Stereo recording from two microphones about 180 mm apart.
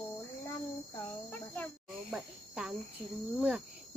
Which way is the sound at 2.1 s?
5° right (ahead or behind).